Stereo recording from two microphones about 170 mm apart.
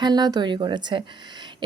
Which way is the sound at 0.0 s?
25° right (ahead or behind).